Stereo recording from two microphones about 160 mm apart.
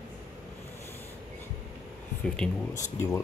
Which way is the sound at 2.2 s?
5° left (ahead or behind).